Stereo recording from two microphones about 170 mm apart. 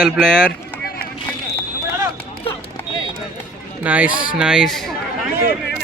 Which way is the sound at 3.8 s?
10° right (ahead or behind).